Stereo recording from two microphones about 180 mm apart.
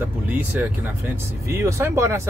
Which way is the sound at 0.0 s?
10° right (ahead or behind).